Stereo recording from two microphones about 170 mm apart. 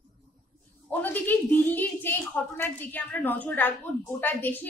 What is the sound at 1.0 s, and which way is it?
A woman's voice, 10° left (ahead or behind).